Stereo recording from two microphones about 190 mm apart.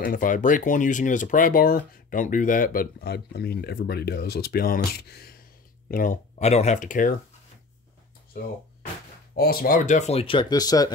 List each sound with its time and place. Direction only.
0.0 s speech: 45° left (ahead or behind)
5.9 s speech: 45° left (ahead or behind)
9.3 s speech: 50° left (ahead or behind); by 10.9 s 20° left (ahead or behind)